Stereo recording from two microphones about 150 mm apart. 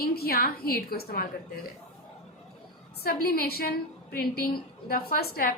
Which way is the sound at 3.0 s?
85° left.